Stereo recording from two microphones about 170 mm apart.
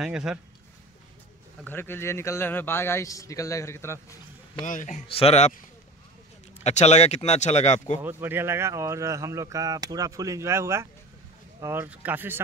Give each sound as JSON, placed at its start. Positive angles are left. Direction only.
{"t": 0.0, "sound": "speech", "side_deg": -5}
{"t": 1.6, "sound": "a man's voice", "side_deg": 10}
{"t": 4.6, "sound": "a man's voice", "side_deg": 50}
{"t": 5.0, "sound": "speech", "side_deg": 35}
{"t": 6.6, "sound": "speech", "side_deg": 40}
{"t": 8.0, "sound": "speech", "side_deg": -10}